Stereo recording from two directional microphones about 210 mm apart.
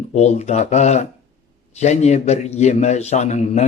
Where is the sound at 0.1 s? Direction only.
30° left (ahead or behind).